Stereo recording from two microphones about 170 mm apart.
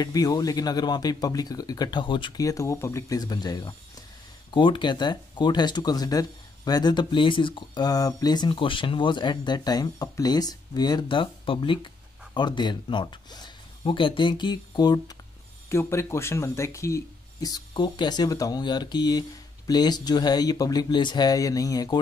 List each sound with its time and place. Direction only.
0.0 s speech: 20° left (ahead or behind)